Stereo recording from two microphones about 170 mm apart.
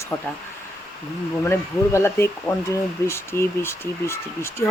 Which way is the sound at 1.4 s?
15° left (ahead or behind).